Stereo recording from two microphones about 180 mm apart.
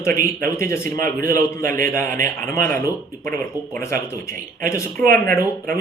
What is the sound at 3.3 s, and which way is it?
Speech, 10° left (ahead or behind).